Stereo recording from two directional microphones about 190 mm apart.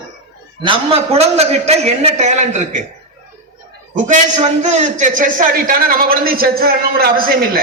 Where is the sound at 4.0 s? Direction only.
40° right (ahead or behind).